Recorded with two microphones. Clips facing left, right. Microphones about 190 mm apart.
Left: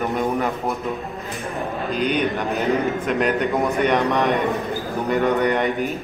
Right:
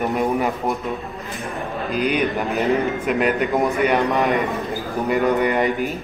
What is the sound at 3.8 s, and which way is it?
A man's voice, 5° right (ahead or behind).